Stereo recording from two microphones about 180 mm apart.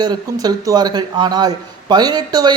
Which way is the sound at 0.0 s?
20° right (ahead or behind).